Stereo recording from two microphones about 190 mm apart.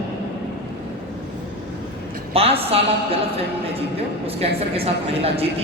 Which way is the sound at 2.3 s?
30° right (ahead or behind).